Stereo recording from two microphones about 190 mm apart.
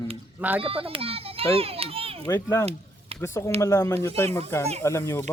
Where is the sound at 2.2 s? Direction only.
15° left (ahead or behind).